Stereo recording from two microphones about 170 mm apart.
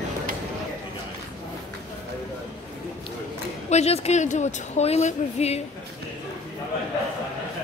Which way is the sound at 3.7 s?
40° left (ahead or behind).